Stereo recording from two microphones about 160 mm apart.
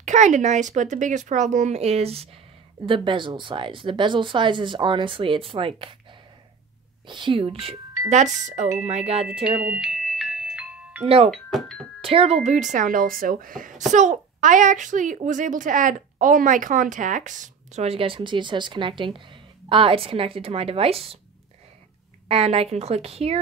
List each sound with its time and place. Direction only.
0.0 s a woman's voice: 50° right (ahead or behind); by 5.9 s 35° right (ahead or behind)
7.1 s a woman's voice: 30° right (ahead or behind)
8.1 s a child's voice: 50° right (ahead or behind)
9.4 s glockenspiel: 5° right (ahead or behind)
11.2 s speech: centre (ahead or behind)
12.0 s a child's voice: 35° right (ahead or behind)
22.3 s a woman's voice: 40° right (ahead or behind)